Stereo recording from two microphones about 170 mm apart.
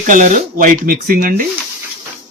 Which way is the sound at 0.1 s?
50° right (ahead or behind).